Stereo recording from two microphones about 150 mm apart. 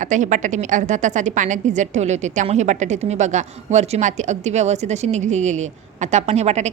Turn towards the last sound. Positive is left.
turn(degrees=-50)  # may be behind; listen again after turning